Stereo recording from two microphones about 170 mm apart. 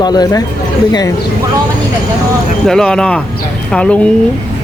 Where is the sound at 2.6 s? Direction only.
5° left (ahead or behind).